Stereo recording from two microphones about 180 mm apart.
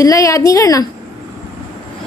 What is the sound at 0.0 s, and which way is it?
Speech, 20° left (ahead or behind).